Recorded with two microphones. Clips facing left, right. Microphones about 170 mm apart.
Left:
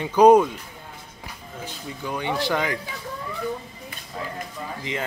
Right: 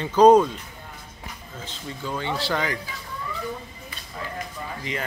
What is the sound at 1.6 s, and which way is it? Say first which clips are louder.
Speech: left 1 dB; 15° left (ahead or behind).